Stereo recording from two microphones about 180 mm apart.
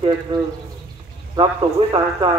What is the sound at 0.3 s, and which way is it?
Speech, 30° right (ahead or behind).